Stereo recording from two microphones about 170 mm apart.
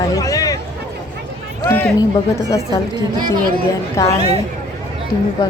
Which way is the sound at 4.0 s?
20° left (ahead or behind).